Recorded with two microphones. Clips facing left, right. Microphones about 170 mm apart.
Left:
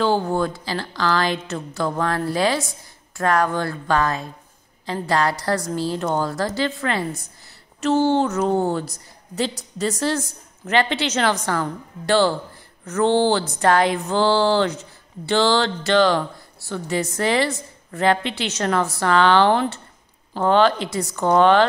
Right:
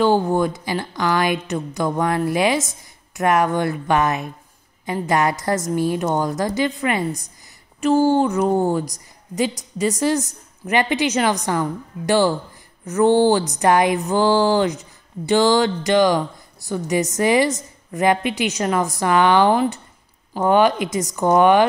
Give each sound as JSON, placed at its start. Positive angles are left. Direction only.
{"t": 0.0, "sound": "a woman's voice", "side_deg": -15}